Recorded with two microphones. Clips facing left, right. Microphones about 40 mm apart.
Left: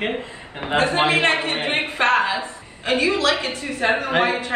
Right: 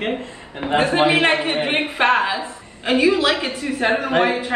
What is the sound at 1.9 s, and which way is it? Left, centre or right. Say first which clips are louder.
Speech: even; centre.